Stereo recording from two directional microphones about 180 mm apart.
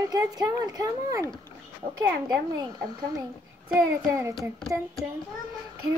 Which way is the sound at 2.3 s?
20° right (ahead or behind).